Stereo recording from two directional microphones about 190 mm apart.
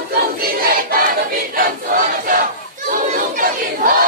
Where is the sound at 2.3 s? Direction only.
45° right (ahead or behind).